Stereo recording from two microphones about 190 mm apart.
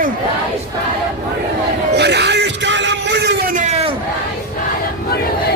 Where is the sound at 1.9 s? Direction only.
60° right (ahead or behind).